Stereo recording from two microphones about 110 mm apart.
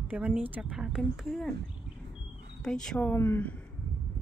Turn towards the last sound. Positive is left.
turn(degrees=15)  # may be behind; listen again after turning